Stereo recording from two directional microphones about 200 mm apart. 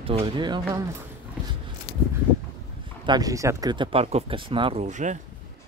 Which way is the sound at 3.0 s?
20° right (ahead or behind).